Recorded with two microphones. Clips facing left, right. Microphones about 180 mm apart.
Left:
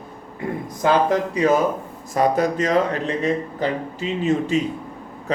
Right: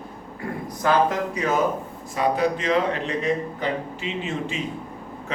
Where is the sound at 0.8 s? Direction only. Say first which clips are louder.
Left 3 dB; 25° left (ahead or behind).